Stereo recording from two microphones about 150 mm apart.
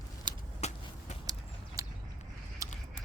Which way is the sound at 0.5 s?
45° left (ahead or behind).